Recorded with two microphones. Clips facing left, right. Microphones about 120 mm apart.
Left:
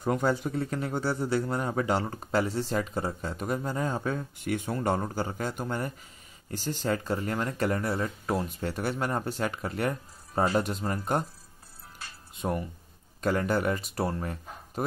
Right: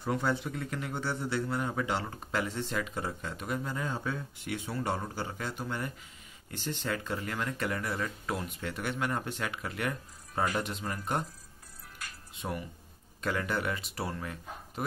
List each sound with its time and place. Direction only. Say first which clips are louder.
0.0 s speech: left 4 dB; 45° left (ahead or behind)
12.4 s speech: left 6 dB; 45° left (ahead or behind)